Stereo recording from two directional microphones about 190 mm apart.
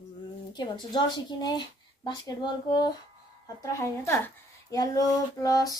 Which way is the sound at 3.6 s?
15° left (ahead or behind).